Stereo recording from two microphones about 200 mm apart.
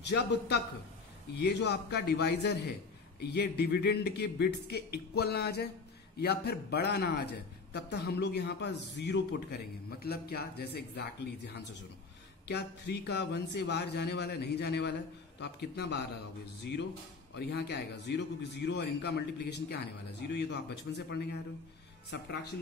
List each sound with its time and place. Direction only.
0.0 s a man's voice: 55° left (ahead or behind)
12.4 s a man's voice: 55° left (ahead or behind)
17.4 s a man's voice: 55° left (ahead or behind)